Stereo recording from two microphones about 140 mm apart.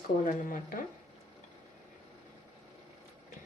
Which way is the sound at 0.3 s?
70° left (ahead or behind).